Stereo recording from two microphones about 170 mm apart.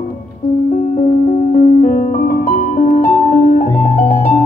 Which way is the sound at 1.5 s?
50° left (ahead or behind).